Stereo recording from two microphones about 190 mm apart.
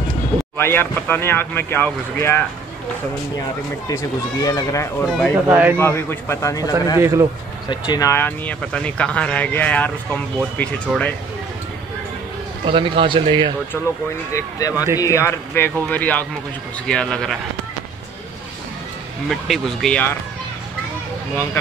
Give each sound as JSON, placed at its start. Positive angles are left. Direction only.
{"t": 0.6, "sound": "speech", "side_deg": 10}
{"t": 3.9, "sound": "speech", "side_deg": 20}
{"t": 5.5, "sound": "a man's voice", "side_deg": -10}
{"t": 5.8, "sound": "speech", "side_deg": 10}
{"t": 7.0, "sound": "a man's voice", "side_deg": -15}
{"t": 7.7, "sound": "speech", "side_deg": 20}
{"t": 12.6, "sound": "speech", "side_deg": -25}
{"t": 14.3, "sound": "speech", "side_deg": 20}
{"t": 19.2, "sound": "speech", "side_deg": 0}